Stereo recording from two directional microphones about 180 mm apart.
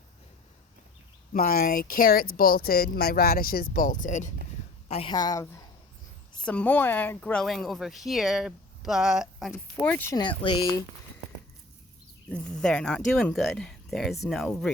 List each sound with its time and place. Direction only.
1.3 s speech: 55° left (ahead or behind)
4.9 s speech: 35° left (ahead or behind)
5.1 s speech: 20° left (ahead or behind); by 9.5 s 5° right (ahead or behind)
9.5 s speech: 10° left (ahead or behind)
10.2 s speech: 25° left (ahead or behind)
12.3 s speech: 5° left (ahead or behind)